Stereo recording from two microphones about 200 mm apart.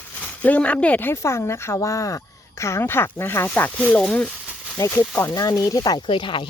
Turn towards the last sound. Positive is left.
turn(degrees=25)  # may be behind; listen again after turning